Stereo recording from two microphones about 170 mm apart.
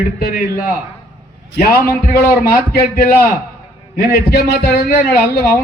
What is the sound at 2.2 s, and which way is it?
A man's voice, 60° left (ahead or behind).